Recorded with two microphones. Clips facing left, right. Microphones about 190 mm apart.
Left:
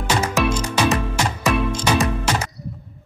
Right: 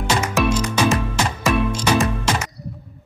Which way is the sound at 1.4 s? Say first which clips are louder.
Right 1 dB; 5° right (ahead or behind).